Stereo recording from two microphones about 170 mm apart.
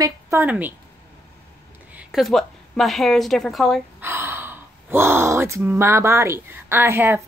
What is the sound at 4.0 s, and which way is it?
Speech, 15° right (ahead or behind).